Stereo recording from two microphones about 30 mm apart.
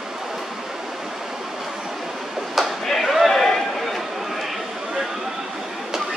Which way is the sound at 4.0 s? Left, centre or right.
Centre.